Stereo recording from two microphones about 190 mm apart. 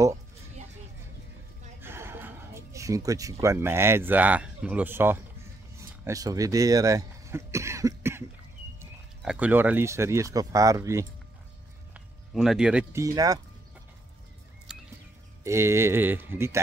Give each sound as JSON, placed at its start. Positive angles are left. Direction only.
{"t": 1.8, "sound": "speech", "side_deg": -10}
{"t": 9.2, "sound": "speech", "side_deg": -5}
{"t": 11.9, "sound": "a sound", "side_deg": 0}
{"t": 12.9, "sound": "speech", "side_deg": -15}
{"t": 14.7, "sound": "a sound", "side_deg": -5}
{"t": 15.4, "sound": "speech", "side_deg": -15}